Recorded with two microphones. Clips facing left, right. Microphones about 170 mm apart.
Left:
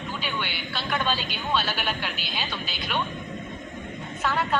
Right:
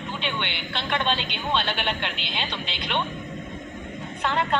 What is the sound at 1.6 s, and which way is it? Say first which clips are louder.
A woman's voice: right 2 dB; 5° left (ahead or behind).